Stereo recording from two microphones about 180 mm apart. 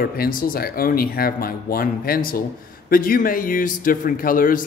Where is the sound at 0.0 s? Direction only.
55° left (ahead or behind).